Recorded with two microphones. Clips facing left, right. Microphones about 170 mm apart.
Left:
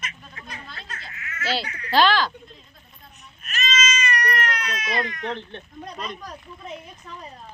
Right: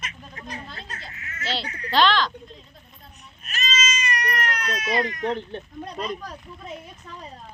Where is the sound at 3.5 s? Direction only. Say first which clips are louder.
Left 2 dB; 35° right (ahead or behind).